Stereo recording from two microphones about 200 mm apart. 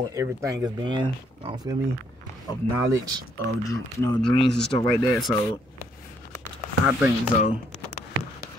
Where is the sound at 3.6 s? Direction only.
15° left (ahead or behind).